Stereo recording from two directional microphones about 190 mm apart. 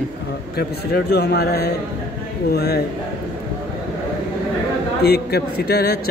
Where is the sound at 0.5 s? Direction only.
55° left (ahead or behind).